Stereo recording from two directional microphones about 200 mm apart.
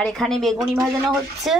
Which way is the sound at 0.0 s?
Centre (ahead or behind).